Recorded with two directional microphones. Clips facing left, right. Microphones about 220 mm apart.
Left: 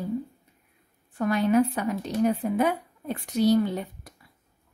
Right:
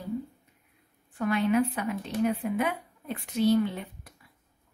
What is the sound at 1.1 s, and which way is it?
Speech, 40° left (ahead or behind).